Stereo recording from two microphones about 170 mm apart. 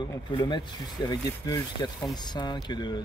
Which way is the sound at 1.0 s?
20° left (ahead or behind).